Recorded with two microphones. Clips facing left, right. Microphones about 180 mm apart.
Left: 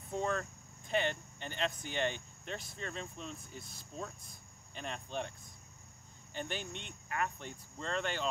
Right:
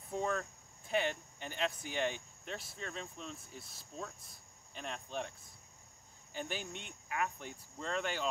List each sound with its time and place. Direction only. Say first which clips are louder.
0.1 s speech: left 1 dB; centre (ahead or behind)
6.3 s speech: left 1 dB; 5° right (ahead or behind)